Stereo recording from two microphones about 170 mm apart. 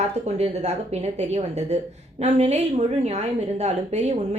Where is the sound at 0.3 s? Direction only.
40° right (ahead or behind).